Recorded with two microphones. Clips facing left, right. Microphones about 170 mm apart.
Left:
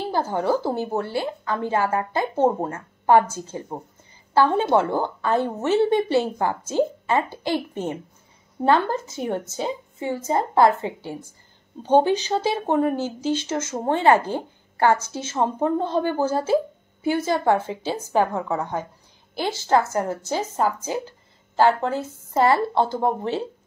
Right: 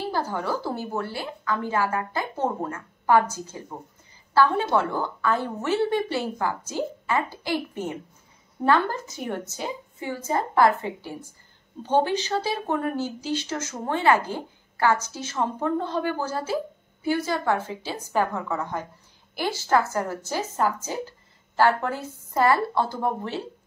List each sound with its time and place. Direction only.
0.1 s a woman's voice: 25° left (ahead or behind)